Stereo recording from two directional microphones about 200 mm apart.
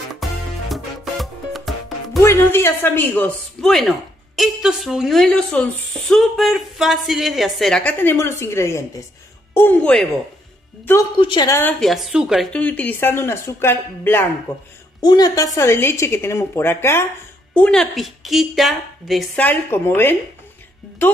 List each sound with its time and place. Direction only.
0.1 s music: centre (ahead or behind)
2.2 s a woman's voice: 10° left (ahead or behind)
11.1 s a woman's voice: 25° left (ahead or behind)
11.8 s a woman's voice: centre (ahead or behind)